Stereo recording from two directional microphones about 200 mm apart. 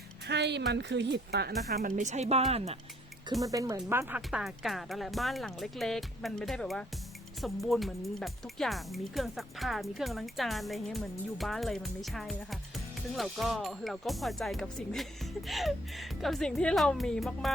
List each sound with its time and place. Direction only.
0.3 s a sound: 60° right (ahead or behind)
0.7 s speech: 60° right (ahead or behind)
1.7 s a woman's voice: 45° right (ahead or behind)
3.4 s speech: 15° right (ahead or behind); by 17.5 s centre (ahead or behind)